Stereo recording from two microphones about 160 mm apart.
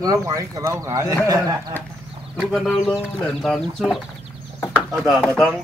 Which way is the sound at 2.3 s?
Centre (ahead or behind).